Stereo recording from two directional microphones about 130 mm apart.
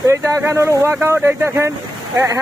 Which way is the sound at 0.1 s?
25° right (ahead or behind).